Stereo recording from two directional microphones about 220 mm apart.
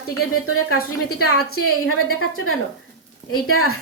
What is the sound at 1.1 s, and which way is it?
A woman's voice, 85° left.